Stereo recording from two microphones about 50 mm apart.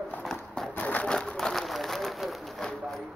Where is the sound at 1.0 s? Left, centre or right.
Centre.